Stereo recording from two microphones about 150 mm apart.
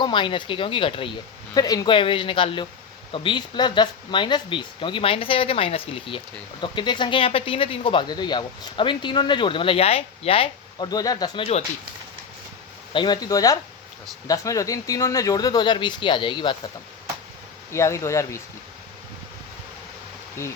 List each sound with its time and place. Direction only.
0.0 s speech: 35° left (ahead or behind)
1.5 s speech: 25° left (ahead or behind)
12.9 s speech: 30° left (ahead or behind)
17.7 s speech: 20° left (ahead or behind)